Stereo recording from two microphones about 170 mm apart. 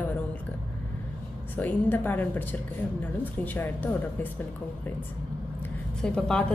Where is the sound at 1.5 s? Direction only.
10° left (ahead or behind).